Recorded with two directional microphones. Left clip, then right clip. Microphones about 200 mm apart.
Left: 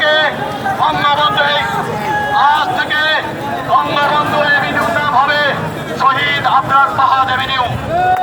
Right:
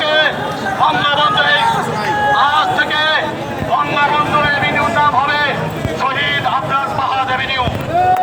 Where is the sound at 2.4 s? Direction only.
15° left (ahead or behind).